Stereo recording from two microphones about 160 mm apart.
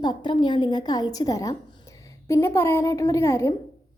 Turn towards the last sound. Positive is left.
turn(degrees=20)  # may be behind; listen again after turning